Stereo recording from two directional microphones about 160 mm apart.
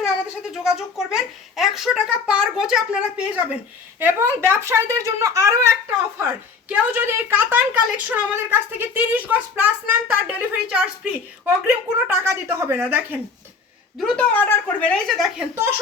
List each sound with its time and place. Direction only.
0.0 s a child's voice: 5° right (ahead or behind)
4.0 s a woman's voice: 15° right (ahead or behind)
14.0 s a woman's voice: centre (ahead or behind)
14.3 s a woman's voice: 10° left (ahead or behind)